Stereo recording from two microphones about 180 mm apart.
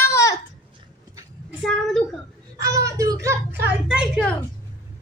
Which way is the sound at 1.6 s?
Centre (ahead or behind).